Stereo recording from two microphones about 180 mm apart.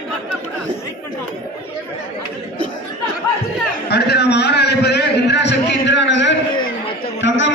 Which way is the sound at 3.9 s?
65° left (ahead or behind).